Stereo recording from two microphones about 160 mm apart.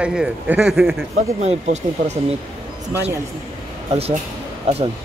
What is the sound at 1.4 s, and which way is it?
Speech, 45° right (ahead or behind).